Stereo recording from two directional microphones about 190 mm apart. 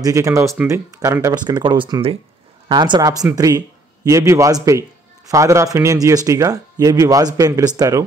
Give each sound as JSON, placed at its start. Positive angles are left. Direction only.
{"t": 0.0, "sound": "a man's voice", "side_deg": -15}